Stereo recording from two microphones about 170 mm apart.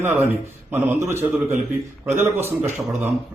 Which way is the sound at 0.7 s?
15° right (ahead or behind).